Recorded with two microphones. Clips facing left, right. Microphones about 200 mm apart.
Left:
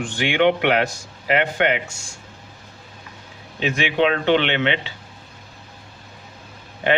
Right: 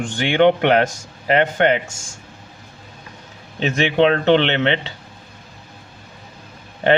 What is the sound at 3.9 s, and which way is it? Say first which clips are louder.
Speech: right 4 dB; 35° right (ahead or behind).